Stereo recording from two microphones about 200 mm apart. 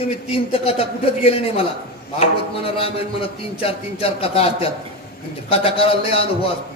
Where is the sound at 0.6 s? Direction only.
30° left (ahead or behind).